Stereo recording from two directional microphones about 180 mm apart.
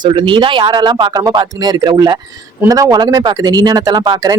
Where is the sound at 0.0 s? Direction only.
25° right (ahead or behind).